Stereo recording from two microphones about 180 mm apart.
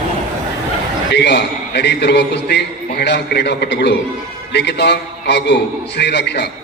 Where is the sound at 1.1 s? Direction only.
70° left (ahead or behind).